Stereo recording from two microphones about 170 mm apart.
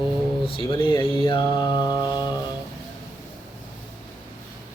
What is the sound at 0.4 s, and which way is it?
Mantra, 30° left (ahead or behind).